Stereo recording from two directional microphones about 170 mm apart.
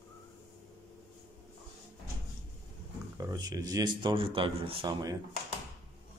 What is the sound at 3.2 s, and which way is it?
Speech, 25° right (ahead or behind).